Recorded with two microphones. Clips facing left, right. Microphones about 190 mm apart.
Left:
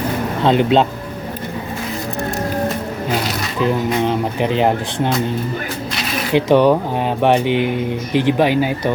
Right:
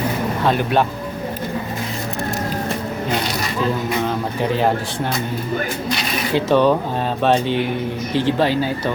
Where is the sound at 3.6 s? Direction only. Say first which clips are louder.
Left 4 dB; 20° left (ahead or behind).